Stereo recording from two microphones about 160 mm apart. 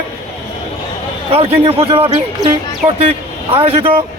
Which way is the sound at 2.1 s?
25° right (ahead or behind).